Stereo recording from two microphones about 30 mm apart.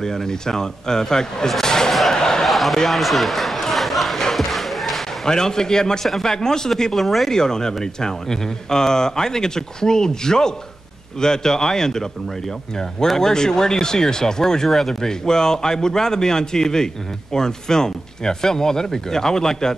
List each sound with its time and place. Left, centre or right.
0.0 s speech: centre
2.4 s a sound: centre
2.9 s speech: centre
3.7 s crowd: centre
4.2 s a sound: centre
5.2 s speech: left
7.0 s speech: centre
7.2 s speech: centre